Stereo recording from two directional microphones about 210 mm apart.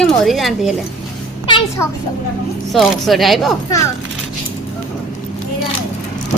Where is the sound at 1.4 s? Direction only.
20° left (ahead or behind).